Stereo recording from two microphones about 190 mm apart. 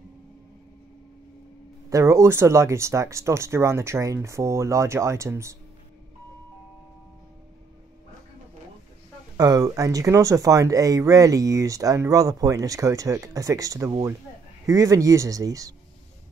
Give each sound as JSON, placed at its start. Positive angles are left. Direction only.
{"t": 1.9, "sound": "speech", "side_deg": -15}
{"t": 9.4, "sound": "speech", "side_deg": -20}